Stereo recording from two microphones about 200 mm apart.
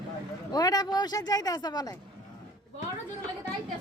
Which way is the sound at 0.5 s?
20° left (ahead or behind).